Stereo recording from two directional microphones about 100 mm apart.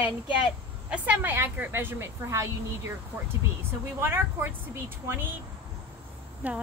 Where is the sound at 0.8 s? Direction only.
15° right (ahead or behind).